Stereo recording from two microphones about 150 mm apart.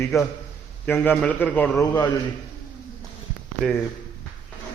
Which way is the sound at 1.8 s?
25° left (ahead or behind).